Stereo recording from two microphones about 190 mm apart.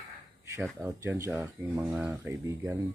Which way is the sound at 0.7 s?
15° right (ahead or behind).